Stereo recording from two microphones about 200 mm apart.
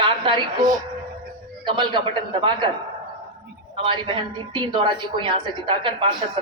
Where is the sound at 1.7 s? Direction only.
25° right (ahead or behind).